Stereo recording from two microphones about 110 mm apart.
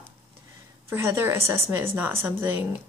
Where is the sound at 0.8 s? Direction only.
25° right (ahead or behind).